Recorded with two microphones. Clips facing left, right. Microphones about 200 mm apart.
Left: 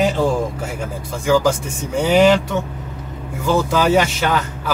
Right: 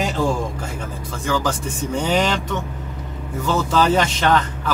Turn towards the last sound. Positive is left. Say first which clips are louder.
# right 1 dB
turn(degrees=10)  # may be behind; listen again after turning